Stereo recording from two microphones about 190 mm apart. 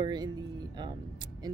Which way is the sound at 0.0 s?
20° right (ahead or behind).